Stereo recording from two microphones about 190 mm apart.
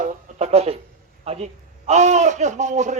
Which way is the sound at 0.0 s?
35° right (ahead or behind).